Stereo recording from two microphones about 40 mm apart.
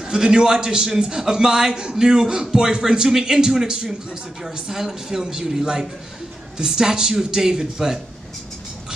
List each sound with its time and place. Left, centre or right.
0.0 s a man's voice: centre